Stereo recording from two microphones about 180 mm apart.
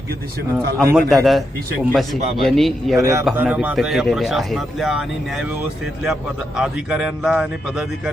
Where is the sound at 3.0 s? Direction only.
15° right (ahead or behind); by 5.5 s centre (ahead or behind).